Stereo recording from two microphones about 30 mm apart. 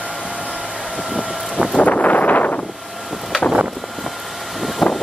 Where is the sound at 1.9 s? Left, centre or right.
Left.